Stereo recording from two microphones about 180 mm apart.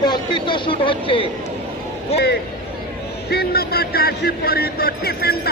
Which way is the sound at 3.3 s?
60° left (ahead or behind).